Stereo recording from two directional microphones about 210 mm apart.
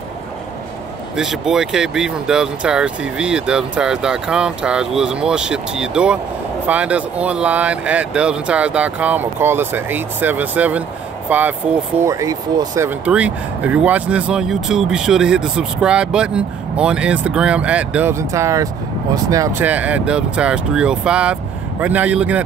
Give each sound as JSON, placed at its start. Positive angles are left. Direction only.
{"t": 1.1, "sound": "speech", "side_deg": 0}